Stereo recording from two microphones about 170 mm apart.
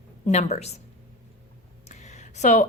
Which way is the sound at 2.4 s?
45° left (ahead or behind).